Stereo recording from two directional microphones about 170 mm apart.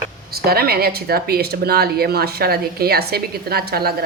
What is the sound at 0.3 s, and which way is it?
Speech, 65° right (ahead or behind).